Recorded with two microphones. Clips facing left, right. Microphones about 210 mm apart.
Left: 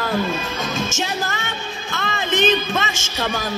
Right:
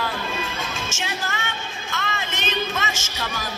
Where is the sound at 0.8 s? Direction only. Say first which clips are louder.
Left 5 dB; 35° left (ahead or behind).